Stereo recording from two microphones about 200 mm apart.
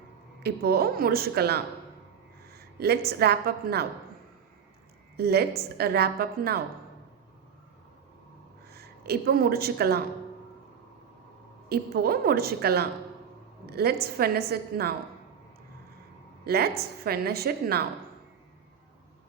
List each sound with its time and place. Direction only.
0.4 s a woman's voice: 50° right (ahead or behind)
2.5 s a sound: 50° right (ahead or behind)
3.1 s a woman's voice: 55° right (ahead or behind)
5.1 s a woman's voice: 55° right (ahead or behind)
8.7 s a woman's voice: 50° right (ahead or behind)
11.7 s a woman's voice: 50° right (ahead or behind)
16.4 s a woman's voice: 50° right (ahead or behind)